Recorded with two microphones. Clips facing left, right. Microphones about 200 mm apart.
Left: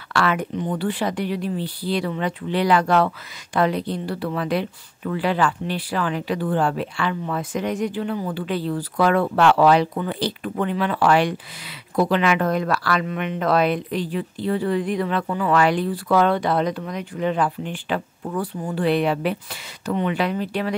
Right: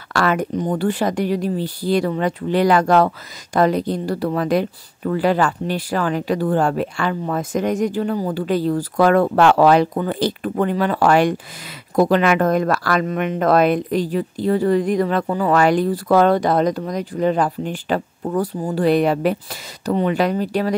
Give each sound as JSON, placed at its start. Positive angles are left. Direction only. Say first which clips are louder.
{"t": 0.1, "sound": "a woman's voice", "louder": "right 3 dB", "side_deg": -45}